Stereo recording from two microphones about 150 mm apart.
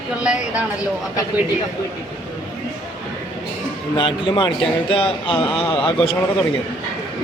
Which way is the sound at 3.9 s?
30° left (ahead or behind).